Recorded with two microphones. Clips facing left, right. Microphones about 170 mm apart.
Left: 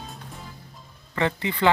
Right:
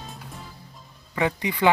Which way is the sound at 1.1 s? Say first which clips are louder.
Even; 10° right (ahead or behind).